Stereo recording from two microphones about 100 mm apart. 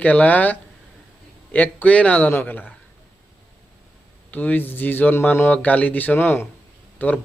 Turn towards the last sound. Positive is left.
turn(degrees=15)  # may be behind; listen again after turning